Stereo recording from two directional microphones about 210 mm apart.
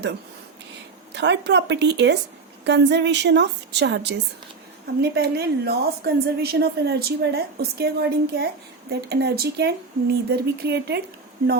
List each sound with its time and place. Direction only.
1.1 s a woman's voice: 55° right (ahead or behind)